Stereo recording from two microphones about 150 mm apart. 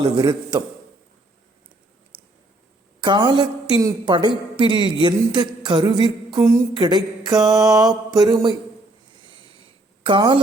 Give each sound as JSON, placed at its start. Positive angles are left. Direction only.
{"t": 0.0, "sound": "mantra", "side_deg": -30}
{"t": 3.0, "sound": "a woman's voice", "side_deg": -30}
{"t": 6.7, "sound": "mantra", "side_deg": -30}
{"t": 9.2, "sound": "a sound", "side_deg": 30}
{"t": 10.0, "sound": "speech", "side_deg": -35}